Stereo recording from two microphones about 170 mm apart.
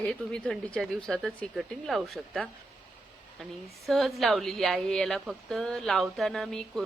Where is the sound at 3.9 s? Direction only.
Centre (ahead or behind).